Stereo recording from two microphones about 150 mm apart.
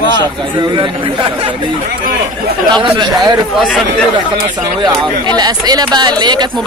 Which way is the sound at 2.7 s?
30° right (ahead or behind).